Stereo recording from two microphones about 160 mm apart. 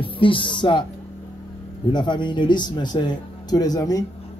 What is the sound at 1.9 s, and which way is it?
Speech, 30° left (ahead or behind).